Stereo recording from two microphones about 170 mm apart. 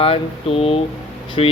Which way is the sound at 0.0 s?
35° left (ahead or behind).